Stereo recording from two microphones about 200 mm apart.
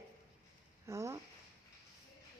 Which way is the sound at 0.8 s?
15° right (ahead or behind).